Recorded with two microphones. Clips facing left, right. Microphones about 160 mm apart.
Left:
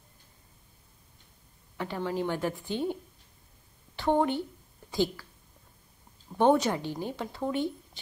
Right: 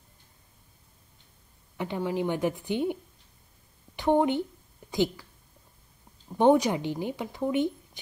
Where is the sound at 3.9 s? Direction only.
15° right (ahead or behind).